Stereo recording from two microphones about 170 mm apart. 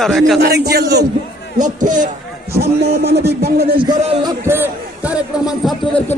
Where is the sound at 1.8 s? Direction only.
50° right (ahead or behind).